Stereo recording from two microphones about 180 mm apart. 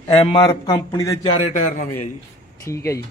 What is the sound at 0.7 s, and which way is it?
Speech, 20° left (ahead or behind).